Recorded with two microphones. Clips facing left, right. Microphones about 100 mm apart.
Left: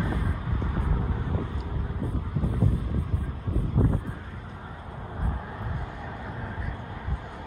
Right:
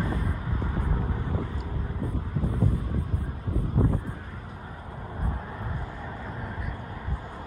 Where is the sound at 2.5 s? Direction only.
20° left (ahead or behind).